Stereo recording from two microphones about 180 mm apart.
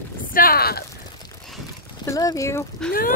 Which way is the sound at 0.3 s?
55° left (ahead or behind).